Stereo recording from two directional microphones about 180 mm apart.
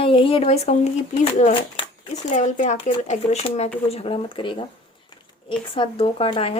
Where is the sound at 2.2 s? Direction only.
40° left (ahead or behind).